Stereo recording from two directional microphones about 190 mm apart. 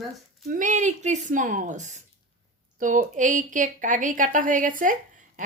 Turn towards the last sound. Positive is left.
turn(degrees=-45)  # may be behind; listen again after turning